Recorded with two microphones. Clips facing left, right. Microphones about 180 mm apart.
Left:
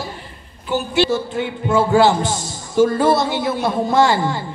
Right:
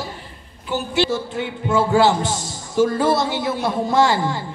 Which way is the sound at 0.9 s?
55° left (ahead or behind).